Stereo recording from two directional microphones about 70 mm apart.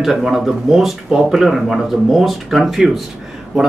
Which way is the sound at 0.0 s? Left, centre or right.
Centre.